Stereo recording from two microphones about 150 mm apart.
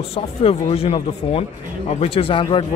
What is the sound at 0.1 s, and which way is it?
Speech, 40° left (ahead or behind).